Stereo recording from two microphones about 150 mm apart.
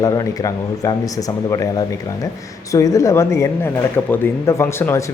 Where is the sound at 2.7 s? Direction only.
20° left (ahead or behind).